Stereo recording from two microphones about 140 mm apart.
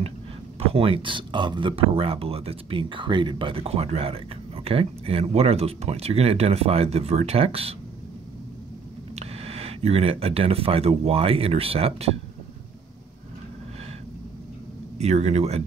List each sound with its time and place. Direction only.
0.6 s speech: 45° right (ahead or behind)
9.1 s speech: 45° right (ahead or behind)
15.0 s speech: 50° right (ahead or behind)